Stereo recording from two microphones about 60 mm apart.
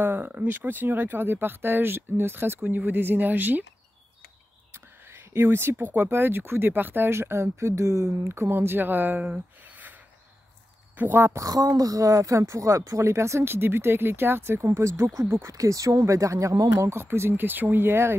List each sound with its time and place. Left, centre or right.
0.0 s speech: right
4.7 s whispering: right
5.9 s speech: right
8.3 s speech: right
11.0 s speech: right
11.3 s speech: right
15.2 s speech: right
15.5 s speech: right
16.9 s speech: right